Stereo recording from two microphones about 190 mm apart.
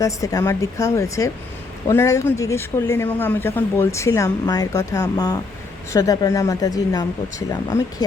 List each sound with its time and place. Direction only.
0.0 s speech: 20° left (ahead or behind)